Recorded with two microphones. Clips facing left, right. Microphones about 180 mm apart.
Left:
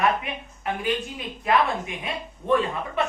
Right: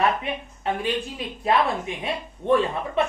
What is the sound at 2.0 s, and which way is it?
Speech, 30° right (ahead or behind).